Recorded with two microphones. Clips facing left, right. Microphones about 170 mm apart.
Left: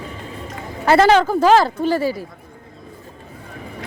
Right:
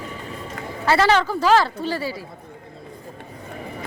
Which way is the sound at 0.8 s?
45° left (ahead or behind).